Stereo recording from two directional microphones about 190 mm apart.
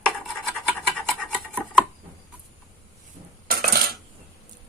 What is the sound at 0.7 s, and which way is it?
Scratch, centre (ahead or behind).